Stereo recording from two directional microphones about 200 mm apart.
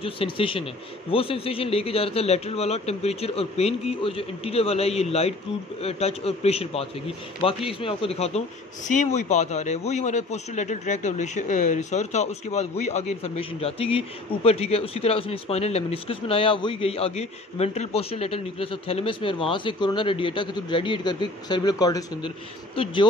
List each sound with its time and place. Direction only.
0.0 s a man's voice: 25° left (ahead or behind)